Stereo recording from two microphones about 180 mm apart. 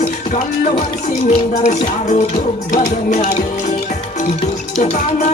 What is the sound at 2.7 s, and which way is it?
Speech, 40° left (ahead or behind).